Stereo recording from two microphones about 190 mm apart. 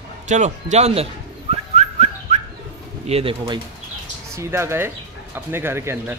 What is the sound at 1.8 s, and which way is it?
Whistling, 35° right (ahead or behind).